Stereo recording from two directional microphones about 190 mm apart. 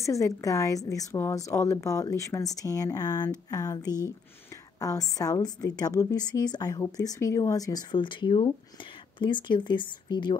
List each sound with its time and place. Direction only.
0.0 s a woman's voice: 15° left (ahead or behind)